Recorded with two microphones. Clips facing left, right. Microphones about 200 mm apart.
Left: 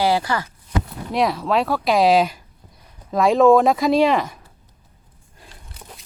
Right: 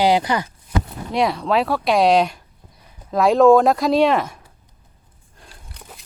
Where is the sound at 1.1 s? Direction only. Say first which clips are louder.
Right 1 dB; centre (ahead or behind).